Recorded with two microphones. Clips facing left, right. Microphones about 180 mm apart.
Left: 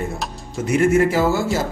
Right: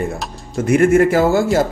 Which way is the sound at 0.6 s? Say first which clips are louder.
Right 4 dB; 55° right (ahead or behind).